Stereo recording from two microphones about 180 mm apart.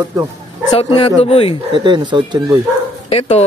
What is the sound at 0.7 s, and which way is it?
Speech, 35° left (ahead or behind).